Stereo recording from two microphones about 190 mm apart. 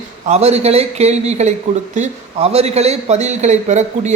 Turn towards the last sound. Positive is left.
turn(degrees=-35)  # may be behind; listen again after turning